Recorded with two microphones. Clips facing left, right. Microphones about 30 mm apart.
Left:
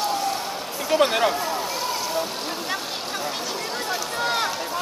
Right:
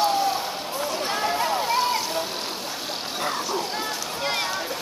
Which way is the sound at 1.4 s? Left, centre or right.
Right.